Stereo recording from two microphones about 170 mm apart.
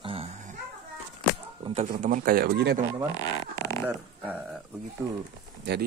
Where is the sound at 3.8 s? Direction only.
10° right (ahead or behind).